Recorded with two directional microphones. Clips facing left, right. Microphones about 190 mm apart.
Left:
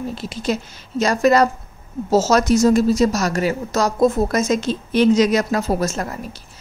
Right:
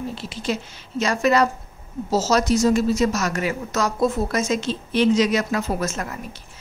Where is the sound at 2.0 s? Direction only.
50° left (ahead or behind).